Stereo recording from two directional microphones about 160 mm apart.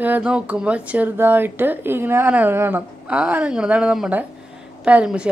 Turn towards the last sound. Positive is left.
turn(degrees=-5)  # may be behind; listen again after turning